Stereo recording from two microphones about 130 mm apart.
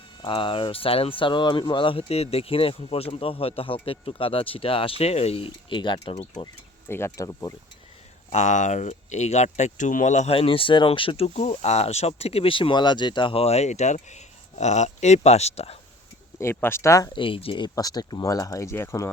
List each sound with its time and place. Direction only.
0.2 s speech: 40° left (ahead or behind)
6.8 s speech: 20° left (ahead or behind)
8.3 s speech: 65° left (ahead or behind)
10.3 s speech: 45° left (ahead or behind)
11.3 s speech: 55° left (ahead or behind)
16.4 s speech: 20° left (ahead or behind)
17.1 s speech: 40° left (ahead or behind); by 19.1 s 20° left (ahead or behind)